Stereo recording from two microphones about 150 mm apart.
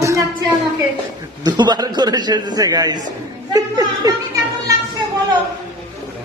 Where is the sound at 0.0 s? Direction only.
20° right (ahead or behind).